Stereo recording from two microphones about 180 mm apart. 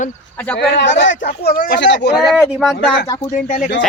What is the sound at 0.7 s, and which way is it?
Speech, 80° left.